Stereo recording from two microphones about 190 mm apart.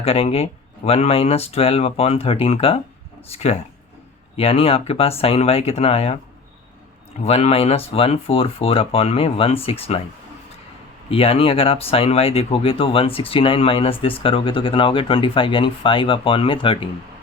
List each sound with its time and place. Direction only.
0.0 s speech: 30° left (ahead or behind)
7.3 s speech: 30° left (ahead or behind)
11.1 s speech: 30° left (ahead or behind)